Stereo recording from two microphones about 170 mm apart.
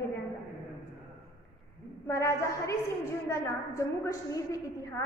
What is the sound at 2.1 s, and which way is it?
A woman's voice, 15° left (ahead or behind).